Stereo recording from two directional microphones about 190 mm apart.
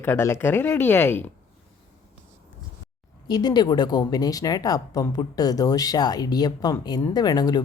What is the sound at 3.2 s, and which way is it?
Speech, 20° left (ahead or behind).